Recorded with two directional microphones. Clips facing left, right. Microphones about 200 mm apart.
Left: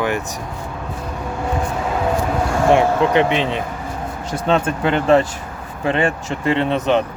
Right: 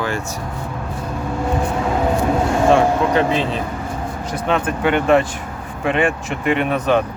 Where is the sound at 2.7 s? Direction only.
20° left (ahead or behind).